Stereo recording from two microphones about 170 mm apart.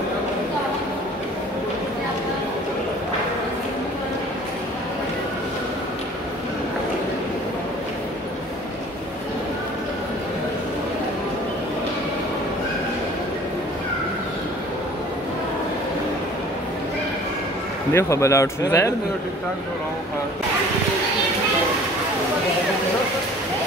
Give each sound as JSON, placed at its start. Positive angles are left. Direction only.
{"t": 17.9, "sound": "speech", "side_deg": 15}